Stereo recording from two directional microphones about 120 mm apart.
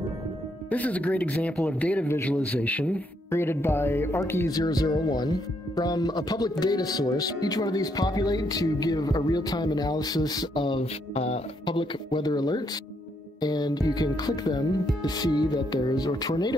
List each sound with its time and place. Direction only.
0.7 s a man's voice: 10° left (ahead or behind); by 10.9 s 40° left (ahead or behind)
11.1 s music: 60° left (ahead or behind)
11.6 s speech: 40° left (ahead or behind)